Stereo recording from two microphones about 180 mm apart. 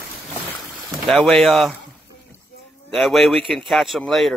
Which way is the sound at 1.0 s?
Centre (ahead or behind).